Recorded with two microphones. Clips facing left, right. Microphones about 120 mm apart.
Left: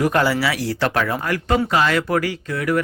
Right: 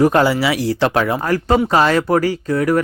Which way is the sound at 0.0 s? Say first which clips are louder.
Right 5 dB; 25° right (ahead or behind).